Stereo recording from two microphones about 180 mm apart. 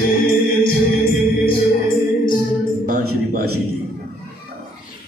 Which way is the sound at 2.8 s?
55° right (ahead or behind).